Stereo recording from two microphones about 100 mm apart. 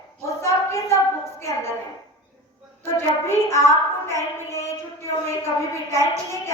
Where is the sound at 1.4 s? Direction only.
25° left (ahead or behind).